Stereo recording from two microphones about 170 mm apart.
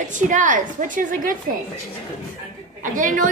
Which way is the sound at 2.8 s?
50° right (ahead or behind).